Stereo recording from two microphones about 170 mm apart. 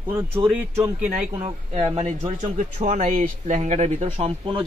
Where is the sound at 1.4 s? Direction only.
40° right (ahead or behind).